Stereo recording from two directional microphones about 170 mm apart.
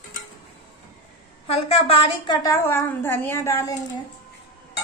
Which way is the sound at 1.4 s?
35° left (ahead or behind).